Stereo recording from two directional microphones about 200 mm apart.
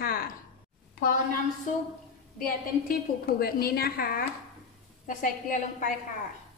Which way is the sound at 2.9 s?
50° left (ahead or behind).